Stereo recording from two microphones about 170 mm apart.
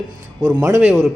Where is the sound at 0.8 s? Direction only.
Centre (ahead or behind).